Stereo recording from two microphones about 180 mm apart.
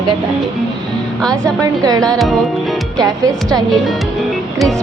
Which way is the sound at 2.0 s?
Centre (ahead or behind).